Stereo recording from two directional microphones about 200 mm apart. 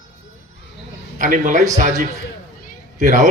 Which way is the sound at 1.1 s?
40° right (ahead or behind).